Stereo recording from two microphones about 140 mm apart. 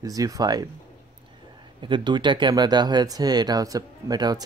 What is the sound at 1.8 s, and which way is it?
Speech, 35° right (ahead or behind).